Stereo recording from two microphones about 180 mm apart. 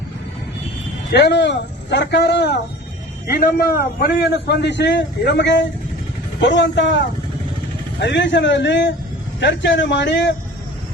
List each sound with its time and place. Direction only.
1.1 s a man's voice: 70° left (ahead or behind)
3.2 s a man's voice: 55° left (ahead or behind); by 7.0 s 80° left
8.0 s a man's voice: 80° left